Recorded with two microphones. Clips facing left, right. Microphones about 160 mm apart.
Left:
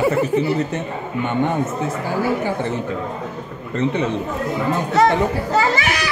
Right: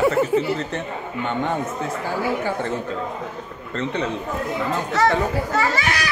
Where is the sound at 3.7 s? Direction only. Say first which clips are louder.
Left 5 dB; 15° left (ahead or behind).